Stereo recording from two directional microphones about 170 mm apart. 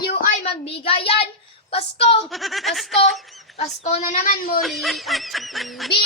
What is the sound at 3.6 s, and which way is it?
A woman's voice, 40° left (ahead or behind).